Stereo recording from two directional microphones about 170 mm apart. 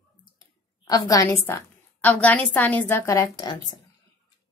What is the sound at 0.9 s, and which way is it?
A woman's voice, 20° left (ahead or behind).